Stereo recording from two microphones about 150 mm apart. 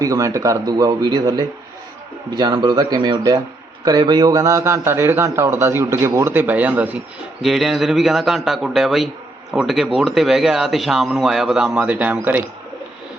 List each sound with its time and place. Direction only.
0.0 s a man's voice: 20° right (ahead or behind)